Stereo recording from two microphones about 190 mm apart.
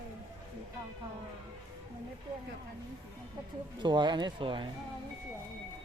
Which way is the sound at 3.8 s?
25° right (ahead or behind).